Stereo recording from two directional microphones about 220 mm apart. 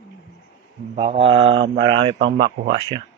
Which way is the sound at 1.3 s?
55° right (ahead or behind).